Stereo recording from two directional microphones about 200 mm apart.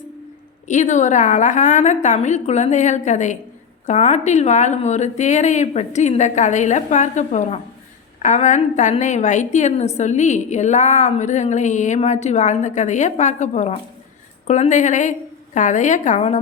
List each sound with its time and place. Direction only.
0.7 s a woman's voice: 35° left (ahead or behind)